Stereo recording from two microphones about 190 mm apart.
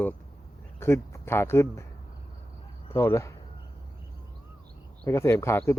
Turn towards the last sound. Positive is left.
turn(degrees=15)  # may be behind; listen again after turning